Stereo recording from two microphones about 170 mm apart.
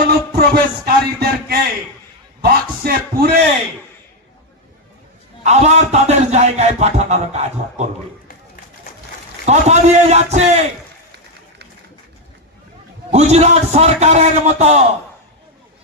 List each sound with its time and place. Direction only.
0.3 s music: 65° right (ahead or behind)
2.4 s a sound: 65° right (ahead or behind)
5.4 s music: 40° right (ahead or behind)
9.5 s a man's voice: 40° right (ahead or behind)
13.1 s a man's voice: 40° right (ahead or behind)